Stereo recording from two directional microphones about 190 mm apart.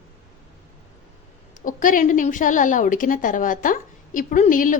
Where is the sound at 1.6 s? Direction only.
45° left (ahead or behind).